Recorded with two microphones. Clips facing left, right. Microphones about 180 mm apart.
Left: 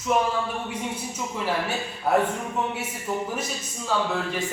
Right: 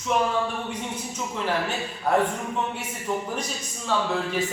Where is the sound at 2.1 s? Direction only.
5° left (ahead or behind).